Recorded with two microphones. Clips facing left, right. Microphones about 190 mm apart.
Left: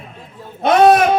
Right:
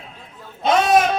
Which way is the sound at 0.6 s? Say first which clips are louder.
Left 5 dB; 60° left (ahead or behind).